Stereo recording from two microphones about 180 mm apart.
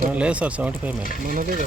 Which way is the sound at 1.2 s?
50° right (ahead or behind).